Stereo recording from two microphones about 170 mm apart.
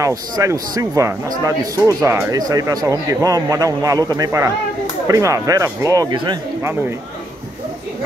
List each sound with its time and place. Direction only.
0.0 s speech: 20° right (ahead or behind)
6.6 s speech: 10° right (ahead or behind)